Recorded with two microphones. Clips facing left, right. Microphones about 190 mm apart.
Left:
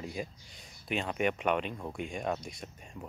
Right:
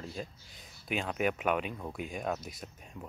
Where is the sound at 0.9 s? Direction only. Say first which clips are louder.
Left 1 dB; centre (ahead or behind).